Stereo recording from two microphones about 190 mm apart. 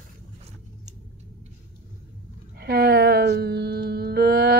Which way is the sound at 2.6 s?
55° right (ahead or behind).